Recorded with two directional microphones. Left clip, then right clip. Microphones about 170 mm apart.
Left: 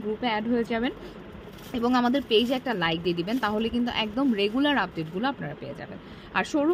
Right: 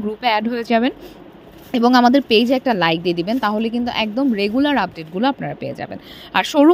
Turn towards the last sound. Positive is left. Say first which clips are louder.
# right 11 dB
turn(degrees=-45)  # may be behind; listen again after turning